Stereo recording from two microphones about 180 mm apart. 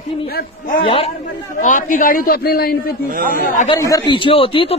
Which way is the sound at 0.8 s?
35° left (ahead or behind).